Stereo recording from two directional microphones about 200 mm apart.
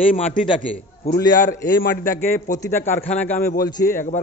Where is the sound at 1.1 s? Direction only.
45° left (ahead or behind).